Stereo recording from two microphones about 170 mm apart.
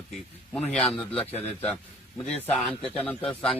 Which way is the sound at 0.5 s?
5° left (ahead or behind).